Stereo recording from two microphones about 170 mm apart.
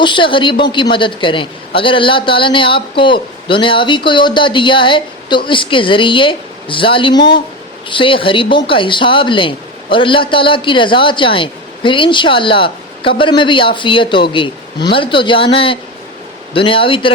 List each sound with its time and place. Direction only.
0.0 s a woman's voice: 30° left (ahead or behind)